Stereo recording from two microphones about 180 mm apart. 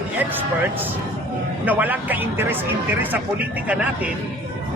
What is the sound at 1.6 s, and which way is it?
Speech, 10° right (ahead or behind).